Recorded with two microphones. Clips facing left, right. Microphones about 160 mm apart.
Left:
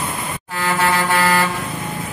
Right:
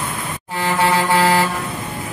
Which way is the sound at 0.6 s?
25° right (ahead or behind).